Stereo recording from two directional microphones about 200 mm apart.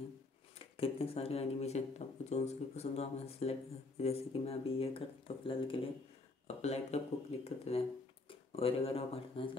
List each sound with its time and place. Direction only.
0.7 s speech: 30° left (ahead or behind)